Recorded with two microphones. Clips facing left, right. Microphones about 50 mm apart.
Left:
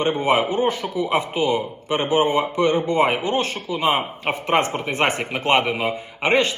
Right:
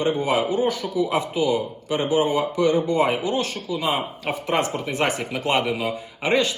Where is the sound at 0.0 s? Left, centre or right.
Left.